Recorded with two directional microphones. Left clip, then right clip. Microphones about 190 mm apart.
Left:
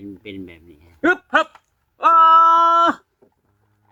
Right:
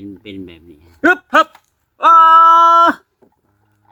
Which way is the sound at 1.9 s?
20° right (ahead or behind).